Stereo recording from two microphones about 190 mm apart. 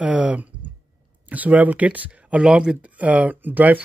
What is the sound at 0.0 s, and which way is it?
Speech, 5° right (ahead or behind).